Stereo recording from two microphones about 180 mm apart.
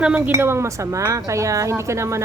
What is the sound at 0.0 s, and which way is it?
Speech, 10° right (ahead or behind).